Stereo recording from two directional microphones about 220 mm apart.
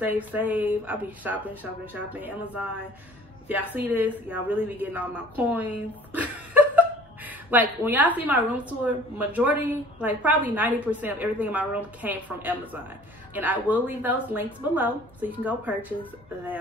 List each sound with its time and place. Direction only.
0.0 s a woman's voice: 5° right (ahead or behind)